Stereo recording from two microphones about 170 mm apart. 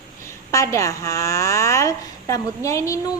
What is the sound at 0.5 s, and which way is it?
A woman's voice, 20° left (ahead or behind).